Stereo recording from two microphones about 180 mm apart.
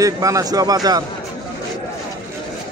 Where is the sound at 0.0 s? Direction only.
20° right (ahead or behind).